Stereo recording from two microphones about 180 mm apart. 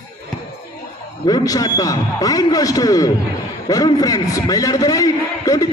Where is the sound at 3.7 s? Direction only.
20° left (ahead or behind).